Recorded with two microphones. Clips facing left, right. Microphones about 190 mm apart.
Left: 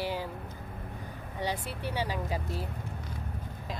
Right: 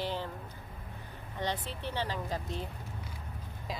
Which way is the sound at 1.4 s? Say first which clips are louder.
Left 2 dB; 10° left (ahead or behind).